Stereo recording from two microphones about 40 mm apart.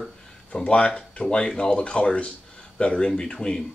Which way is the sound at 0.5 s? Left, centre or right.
Left.